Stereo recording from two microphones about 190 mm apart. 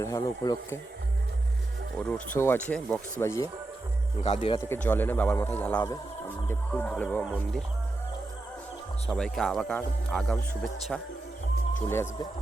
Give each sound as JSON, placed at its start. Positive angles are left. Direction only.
{"t": 0.0, "sound": "speech", "side_deg": 20}
{"t": 2.0, "sound": "speech", "side_deg": 5}
{"t": 4.2, "sound": "speech", "side_deg": 35}
{"t": 4.7, "sound": "speech", "side_deg": 10}
{"t": 9.0, "sound": "speech", "side_deg": 5}